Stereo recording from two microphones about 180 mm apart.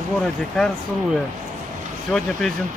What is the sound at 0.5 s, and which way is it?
Speech, 5° left (ahead or behind).